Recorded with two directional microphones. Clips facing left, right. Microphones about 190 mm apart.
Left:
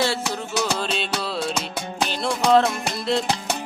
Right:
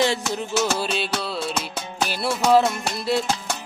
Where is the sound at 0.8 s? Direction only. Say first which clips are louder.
Right 1 dB; 5° right (ahead or behind).